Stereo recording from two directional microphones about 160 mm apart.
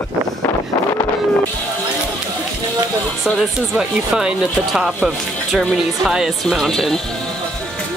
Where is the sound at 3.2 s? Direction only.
Centre (ahead or behind).